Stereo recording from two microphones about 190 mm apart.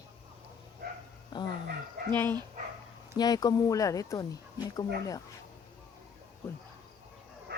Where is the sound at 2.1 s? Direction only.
10° left (ahead or behind).